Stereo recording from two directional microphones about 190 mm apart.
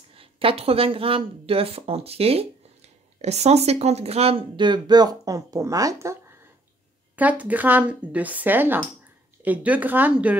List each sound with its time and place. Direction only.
0.1 s speech: 30° right (ahead or behind)
7.2 s speech: 10° right (ahead or behind)